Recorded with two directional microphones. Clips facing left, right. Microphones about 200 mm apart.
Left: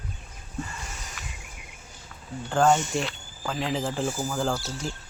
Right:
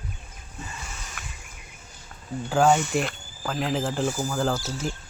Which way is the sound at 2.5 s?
10° right (ahead or behind).